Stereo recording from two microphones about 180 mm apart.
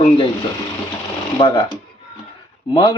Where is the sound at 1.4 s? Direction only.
25° left (ahead or behind).